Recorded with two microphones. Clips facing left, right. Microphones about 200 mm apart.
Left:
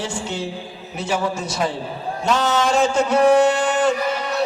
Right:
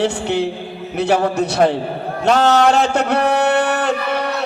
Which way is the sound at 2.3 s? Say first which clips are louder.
Right 6 dB; 65° right (ahead or behind).